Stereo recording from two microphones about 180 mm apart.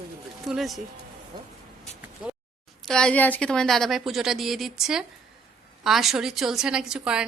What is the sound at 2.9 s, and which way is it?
A woman's voice, 5° left (ahead or behind).